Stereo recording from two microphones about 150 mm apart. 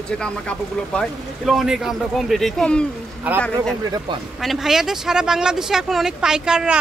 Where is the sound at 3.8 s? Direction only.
25° right (ahead or behind).